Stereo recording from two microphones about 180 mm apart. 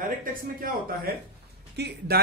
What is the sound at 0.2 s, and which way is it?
Speech, 50° right (ahead or behind).